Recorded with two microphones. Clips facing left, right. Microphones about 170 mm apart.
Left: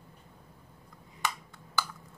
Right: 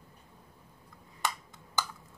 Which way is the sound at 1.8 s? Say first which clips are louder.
Left 1 dB; 20° right (ahead or behind).